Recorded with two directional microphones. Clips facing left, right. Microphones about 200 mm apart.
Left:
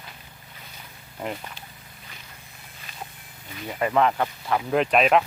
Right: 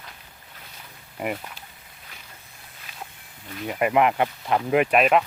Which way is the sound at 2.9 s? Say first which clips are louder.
Left 1 dB; 10° right (ahead or behind).